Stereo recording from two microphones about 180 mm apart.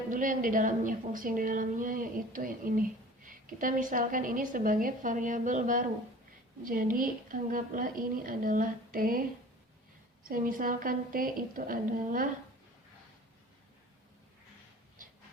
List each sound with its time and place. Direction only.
0.1 s a woman's voice: 50° right (ahead or behind)
10.2 s a woman's voice: 50° right (ahead or behind)